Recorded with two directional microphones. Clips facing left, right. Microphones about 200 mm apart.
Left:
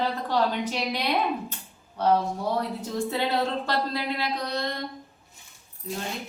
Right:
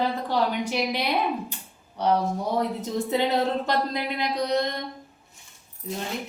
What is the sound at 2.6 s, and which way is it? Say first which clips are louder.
Speech: right 2 dB; 15° right (ahead or behind).